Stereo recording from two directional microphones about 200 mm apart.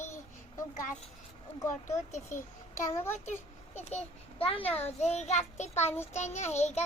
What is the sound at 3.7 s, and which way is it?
A child's voice, 30° left (ahead or behind).